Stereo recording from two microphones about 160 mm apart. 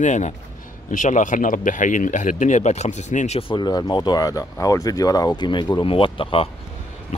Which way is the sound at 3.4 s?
30° left (ahead or behind).